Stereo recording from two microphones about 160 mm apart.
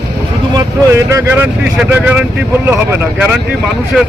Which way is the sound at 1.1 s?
15° right (ahead or behind).